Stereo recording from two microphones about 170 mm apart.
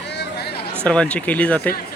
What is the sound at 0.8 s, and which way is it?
Speech, 5° left (ahead or behind).